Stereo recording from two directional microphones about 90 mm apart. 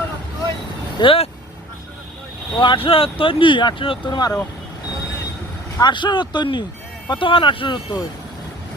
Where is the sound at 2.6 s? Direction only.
70° left (ahead or behind).